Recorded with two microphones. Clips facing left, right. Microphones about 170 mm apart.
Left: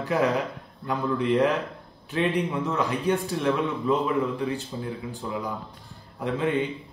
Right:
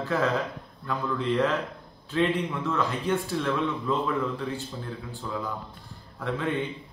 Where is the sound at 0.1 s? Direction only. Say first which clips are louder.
Left 3 dB; 15° left (ahead or behind).